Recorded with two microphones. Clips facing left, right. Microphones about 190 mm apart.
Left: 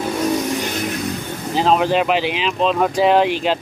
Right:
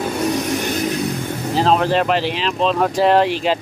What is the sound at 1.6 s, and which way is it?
Speech, centre (ahead or behind).